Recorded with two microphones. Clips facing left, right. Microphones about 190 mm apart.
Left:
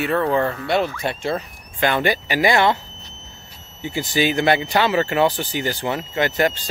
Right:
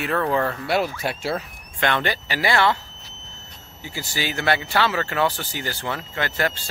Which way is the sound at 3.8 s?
20° left (ahead or behind).